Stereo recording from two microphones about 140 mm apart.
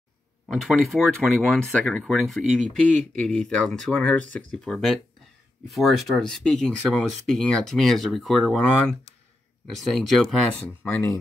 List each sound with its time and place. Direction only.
0.5 s speech: centre (ahead or behind)
9.8 s speech: centre (ahead or behind)
10.7 s speech: 15° left (ahead or behind)